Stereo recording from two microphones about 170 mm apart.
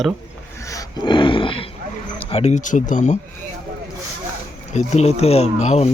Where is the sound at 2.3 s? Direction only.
35° left (ahead or behind).